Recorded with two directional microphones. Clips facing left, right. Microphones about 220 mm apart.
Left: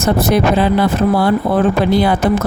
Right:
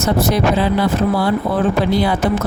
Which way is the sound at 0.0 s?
55° left (ahead or behind).